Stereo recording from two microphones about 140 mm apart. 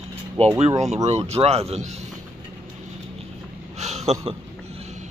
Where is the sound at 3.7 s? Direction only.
55° right (ahead or behind).